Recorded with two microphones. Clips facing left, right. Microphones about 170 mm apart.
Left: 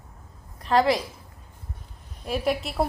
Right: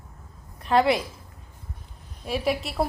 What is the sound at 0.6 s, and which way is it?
Speech, 10° right (ahead or behind).